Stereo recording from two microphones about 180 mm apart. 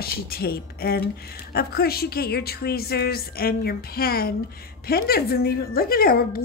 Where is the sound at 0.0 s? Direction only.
55° left (ahead or behind).